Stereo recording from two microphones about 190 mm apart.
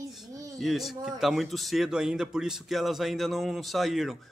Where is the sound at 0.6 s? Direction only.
Centre (ahead or behind).